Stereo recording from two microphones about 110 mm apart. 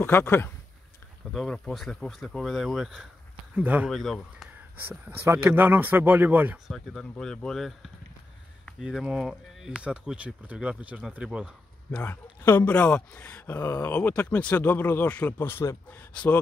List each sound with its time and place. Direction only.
0.0 s speech: 20° left (ahead or behind)
1.3 s speech: 5° left (ahead or behind); by 3.9 s 10° right (ahead or behind)
3.9 s speech: 5° left (ahead or behind)
4.8 s speech: 20° right (ahead or behind)
6.7 s speech: centre (ahead or behind)
11.9 s speech: 15° left (ahead or behind)